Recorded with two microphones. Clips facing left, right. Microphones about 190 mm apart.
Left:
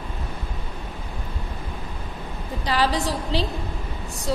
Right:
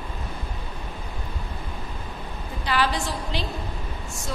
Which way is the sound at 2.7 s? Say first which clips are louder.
Left 2 dB; 35° left (ahead or behind).